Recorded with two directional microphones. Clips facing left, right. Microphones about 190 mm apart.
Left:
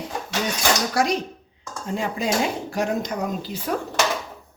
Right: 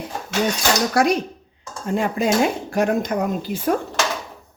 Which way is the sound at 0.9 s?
55° right (ahead or behind).